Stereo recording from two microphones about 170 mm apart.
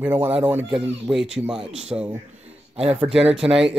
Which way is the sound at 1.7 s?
40° right (ahead or behind).